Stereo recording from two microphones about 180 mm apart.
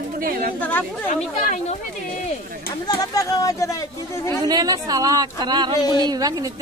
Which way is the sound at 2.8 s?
20° left (ahead or behind).